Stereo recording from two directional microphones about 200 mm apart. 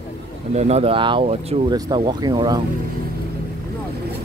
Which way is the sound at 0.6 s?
30° right (ahead or behind).